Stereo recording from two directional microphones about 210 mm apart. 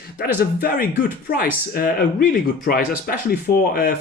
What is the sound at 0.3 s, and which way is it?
Speech, 45° left (ahead or behind).